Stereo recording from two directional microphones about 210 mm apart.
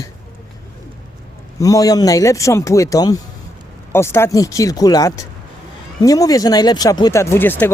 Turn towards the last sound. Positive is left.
turn(degrees=10)  # may be behind; listen again after turning